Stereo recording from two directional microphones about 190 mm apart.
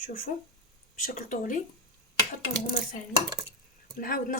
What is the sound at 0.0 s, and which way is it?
Speech, 50° left (ahead or behind).